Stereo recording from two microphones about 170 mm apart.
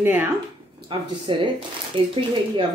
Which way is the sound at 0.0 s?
10° right (ahead or behind).